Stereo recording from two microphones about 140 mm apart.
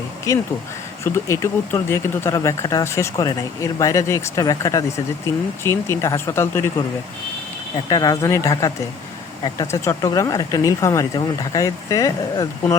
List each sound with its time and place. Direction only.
0.3 s speech: 25° left (ahead or behind)
7.9 s speech: 25° left (ahead or behind)